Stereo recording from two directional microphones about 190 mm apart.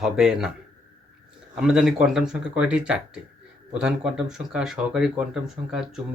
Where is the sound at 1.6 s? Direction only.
5° right (ahead or behind).